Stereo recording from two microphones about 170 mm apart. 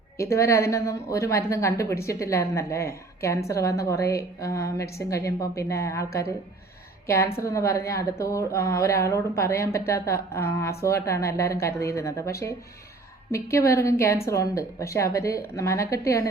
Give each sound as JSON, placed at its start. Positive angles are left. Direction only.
{"t": 0.2, "sound": "a woman's voice", "side_deg": 15}
{"t": 7.3, "sound": "a woman's voice", "side_deg": 20}